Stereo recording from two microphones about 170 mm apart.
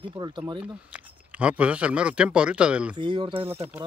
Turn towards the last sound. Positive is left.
turn(degrees=-35)  # may be behind; listen again after turning